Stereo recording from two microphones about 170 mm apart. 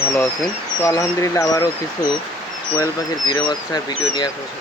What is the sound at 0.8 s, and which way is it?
Speech, 15° left (ahead or behind).